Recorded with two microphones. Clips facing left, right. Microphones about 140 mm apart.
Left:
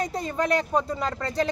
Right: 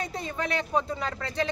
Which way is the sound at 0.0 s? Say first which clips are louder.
Left 5 dB; 40° left (ahead or behind).